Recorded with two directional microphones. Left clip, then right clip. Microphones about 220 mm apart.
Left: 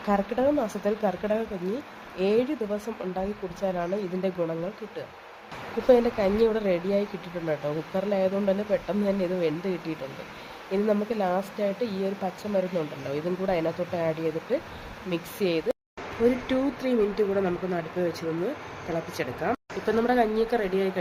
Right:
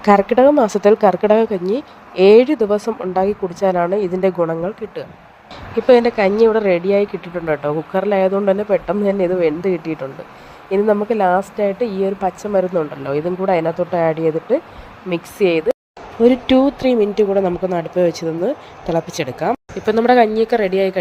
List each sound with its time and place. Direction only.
0.0 s speech: 35° right (ahead or behind)
5.9 s a woman's voice: 25° right (ahead or behind)